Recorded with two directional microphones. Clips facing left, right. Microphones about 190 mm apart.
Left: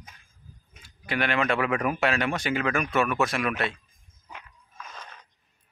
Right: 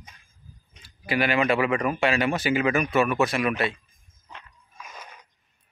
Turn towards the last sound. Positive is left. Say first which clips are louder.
# even
turn(degrees=-10)  # may be behind; listen again after turning